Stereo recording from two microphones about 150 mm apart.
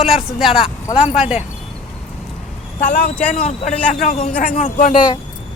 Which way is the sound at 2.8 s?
60° left (ahead or behind).